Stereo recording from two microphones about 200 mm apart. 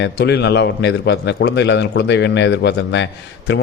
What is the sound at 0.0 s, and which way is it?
A man's voice, 55° left (ahead or behind).